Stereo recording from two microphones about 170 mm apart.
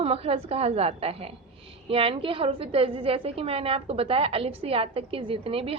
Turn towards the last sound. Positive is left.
turn(degrees=-35)  # may be behind; listen again after turning